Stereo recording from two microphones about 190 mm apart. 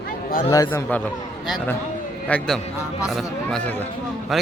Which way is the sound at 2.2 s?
5° left (ahead or behind).